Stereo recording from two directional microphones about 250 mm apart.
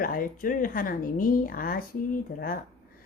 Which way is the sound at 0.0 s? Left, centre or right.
Left.